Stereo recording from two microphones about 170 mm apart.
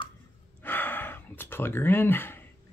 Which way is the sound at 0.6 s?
10° left (ahead or behind).